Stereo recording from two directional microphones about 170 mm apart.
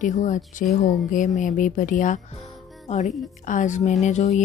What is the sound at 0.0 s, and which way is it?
Music, 50° left (ahead or behind).